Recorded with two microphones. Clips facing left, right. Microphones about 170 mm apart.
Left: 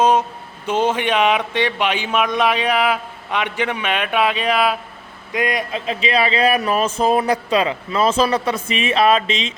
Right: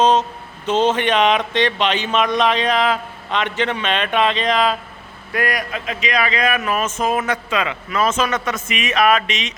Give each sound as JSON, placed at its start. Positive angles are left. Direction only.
{"t": 0.0, "sound": "speech", "side_deg": 10}
{"t": 5.3, "sound": "a man's voice", "side_deg": 20}